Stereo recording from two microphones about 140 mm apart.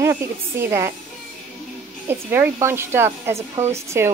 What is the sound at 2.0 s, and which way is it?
A woman's voice, 15° right (ahead or behind).